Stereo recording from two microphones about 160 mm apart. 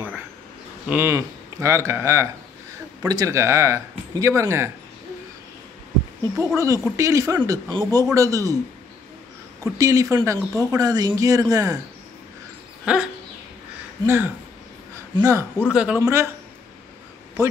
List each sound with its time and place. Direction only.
0.8 s speech: 15° right (ahead or behind)
6.3 s speech: 20° right (ahead or behind)
9.6 s speech: 20° right (ahead or behind)
12.8 s a sound: 5° right (ahead or behind)
14.0 s speech: 15° right (ahead or behind)
15.7 s speech: 5° right (ahead or behind)